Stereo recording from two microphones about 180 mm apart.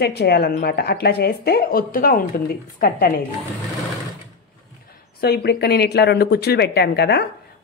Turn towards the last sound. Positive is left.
turn(degrees=65)  # may be behind; listen again after turning